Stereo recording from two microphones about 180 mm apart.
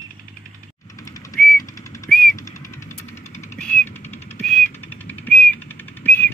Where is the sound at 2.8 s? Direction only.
40° left (ahead or behind).